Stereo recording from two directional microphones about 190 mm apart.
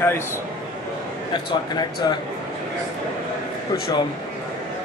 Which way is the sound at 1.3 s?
20° left (ahead or behind).